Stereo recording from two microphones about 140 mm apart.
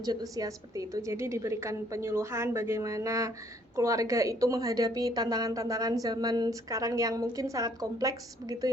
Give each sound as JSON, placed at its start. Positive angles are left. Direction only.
{"t": 0.0, "sound": "a woman's voice", "side_deg": -25}